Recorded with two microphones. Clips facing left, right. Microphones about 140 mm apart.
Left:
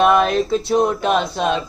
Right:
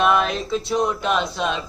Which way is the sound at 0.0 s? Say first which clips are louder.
Left 5 dB; 45° left (ahead or behind).